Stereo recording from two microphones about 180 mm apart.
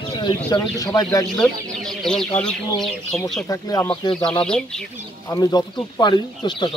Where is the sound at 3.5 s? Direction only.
20° left (ahead or behind).